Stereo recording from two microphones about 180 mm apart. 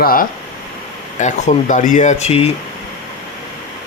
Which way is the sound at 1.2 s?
45° left (ahead or behind).